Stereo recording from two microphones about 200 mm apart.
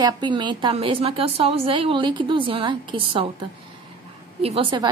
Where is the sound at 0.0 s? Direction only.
20° right (ahead or behind).